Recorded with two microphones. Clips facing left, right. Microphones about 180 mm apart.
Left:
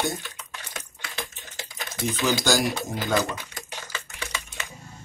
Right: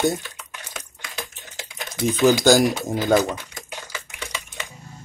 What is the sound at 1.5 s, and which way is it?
Typing, 15° right (ahead or behind).